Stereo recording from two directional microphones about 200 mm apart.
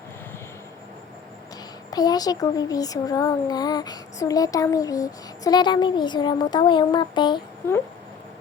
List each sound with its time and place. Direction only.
1.9 s speech: 20° left (ahead or behind)